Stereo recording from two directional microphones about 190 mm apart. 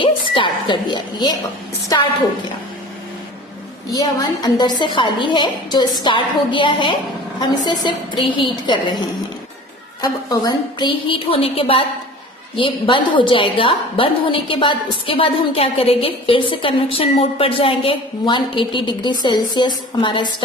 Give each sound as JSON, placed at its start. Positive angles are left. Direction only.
{"t": 0.0, "sound": "a sound", "side_deg": 25}
{"t": 1.9, "sound": "a woman's voice", "side_deg": 20}
{"t": 3.9, "sound": "a woman's voice", "side_deg": 20}
{"t": 10.0, "sound": "a woman's voice", "side_deg": 20}